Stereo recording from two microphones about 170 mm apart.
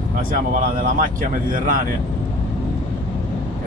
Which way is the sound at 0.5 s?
55° right (ahead or behind).